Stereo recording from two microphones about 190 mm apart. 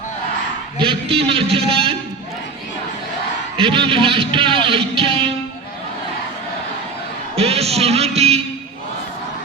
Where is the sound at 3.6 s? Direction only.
30° right (ahead or behind).